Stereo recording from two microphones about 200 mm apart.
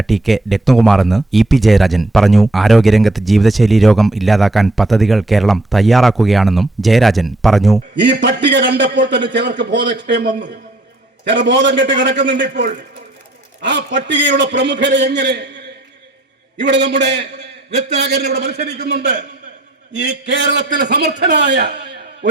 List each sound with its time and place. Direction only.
0.0 s speech: centre (ahead or behind)
8.2 s a man's voice: 60° right (ahead or behind)